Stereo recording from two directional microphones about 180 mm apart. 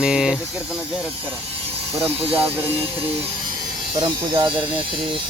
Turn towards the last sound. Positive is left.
turn(degrees=-25)  # may be behind; listen again after turning